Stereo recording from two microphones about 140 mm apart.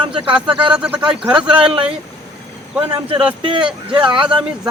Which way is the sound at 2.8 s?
40° right (ahead or behind).